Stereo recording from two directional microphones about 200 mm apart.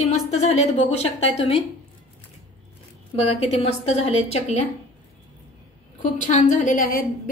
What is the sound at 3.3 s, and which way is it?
A woman's voice, 30° left (ahead or behind).